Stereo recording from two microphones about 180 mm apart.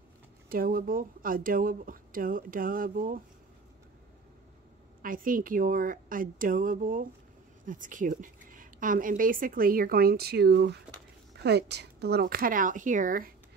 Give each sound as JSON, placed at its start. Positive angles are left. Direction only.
{"t": 0.5, "sound": "a woman's voice", "side_deg": -55}
{"t": 5.0, "sound": "a woman's voice", "side_deg": -50}